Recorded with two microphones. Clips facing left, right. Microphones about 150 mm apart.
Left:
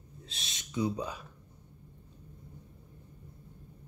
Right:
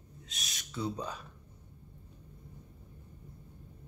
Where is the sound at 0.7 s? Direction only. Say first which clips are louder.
Left 4 dB; 10° left (ahead or behind).